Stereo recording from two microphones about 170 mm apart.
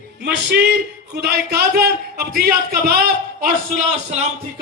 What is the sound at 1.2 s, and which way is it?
A man's voice, 70° right (ahead or behind).